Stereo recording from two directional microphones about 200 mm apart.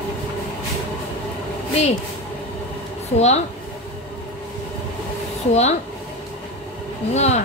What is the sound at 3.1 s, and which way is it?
Speech, 35° left (ahead or behind).